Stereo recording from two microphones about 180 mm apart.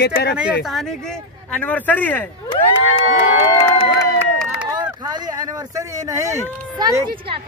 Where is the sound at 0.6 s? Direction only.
Centre (ahead or behind).